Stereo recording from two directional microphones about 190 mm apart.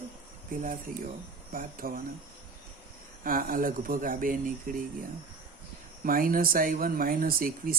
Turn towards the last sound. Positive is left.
turn(degrees=-50)  # may be behind; listen again after turning